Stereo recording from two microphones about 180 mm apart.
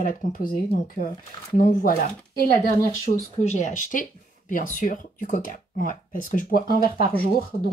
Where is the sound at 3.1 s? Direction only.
40° left (ahead or behind).